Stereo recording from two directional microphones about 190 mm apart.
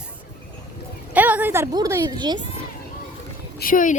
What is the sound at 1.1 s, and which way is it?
A woman's voice, 10° right (ahead or behind).